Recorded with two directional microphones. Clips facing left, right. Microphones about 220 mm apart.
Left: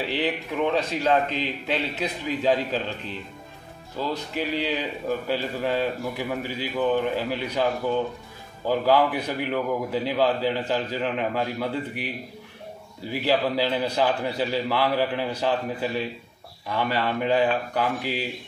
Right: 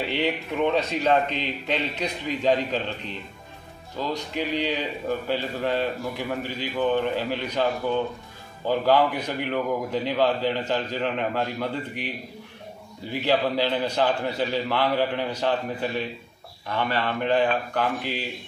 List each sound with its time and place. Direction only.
0.1 s a man's voice: centre (ahead or behind)
4.0 s a man's voice: 5° left (ahead or behind)
13.1 s a man's voice: 10° left (ahead or behind)